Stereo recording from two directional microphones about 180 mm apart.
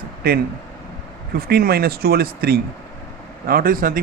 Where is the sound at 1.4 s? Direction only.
55° right (ahead or behind).